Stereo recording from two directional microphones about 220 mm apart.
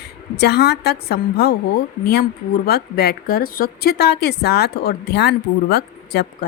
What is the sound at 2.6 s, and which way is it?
A woman's voice, 45° left (ahead or behind).